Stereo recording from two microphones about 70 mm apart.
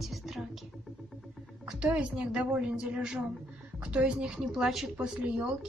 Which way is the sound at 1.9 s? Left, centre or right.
Centre.